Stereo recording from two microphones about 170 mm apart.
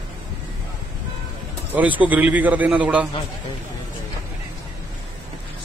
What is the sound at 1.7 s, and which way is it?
A man's voice, 10° right (ahead or behind).